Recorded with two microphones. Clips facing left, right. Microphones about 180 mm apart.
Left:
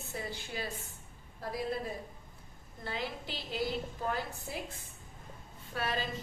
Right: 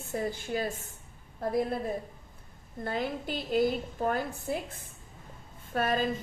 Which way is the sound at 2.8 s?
50° right (ahead or behind).